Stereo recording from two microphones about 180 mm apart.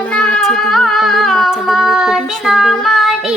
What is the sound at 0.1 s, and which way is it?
Child singing, 5° left (ahead or behind).